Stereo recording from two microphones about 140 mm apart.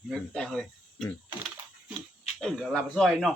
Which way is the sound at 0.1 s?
5° left (ahead or behind).